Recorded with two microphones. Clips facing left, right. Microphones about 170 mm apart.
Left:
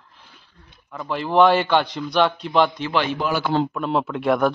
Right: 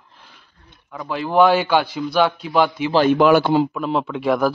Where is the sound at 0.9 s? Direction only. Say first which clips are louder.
Right 1 dB; centre (ahead or behind).